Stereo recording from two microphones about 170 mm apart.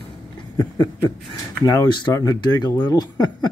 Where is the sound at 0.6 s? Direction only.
25° left (ahead or behind).